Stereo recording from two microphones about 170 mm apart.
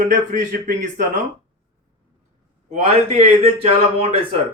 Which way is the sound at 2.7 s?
40° right (ahead or behind).